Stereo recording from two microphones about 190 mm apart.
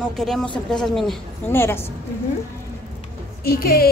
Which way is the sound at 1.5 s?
10° left (ahead or behind).